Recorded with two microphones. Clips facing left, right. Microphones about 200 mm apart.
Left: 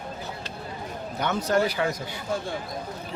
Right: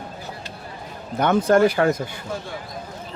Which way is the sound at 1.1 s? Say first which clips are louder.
Right 8 dB; 55° right (ahead or behind).